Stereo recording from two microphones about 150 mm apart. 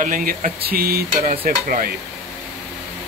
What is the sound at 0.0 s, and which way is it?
Stir, 65° right (ahead or behind).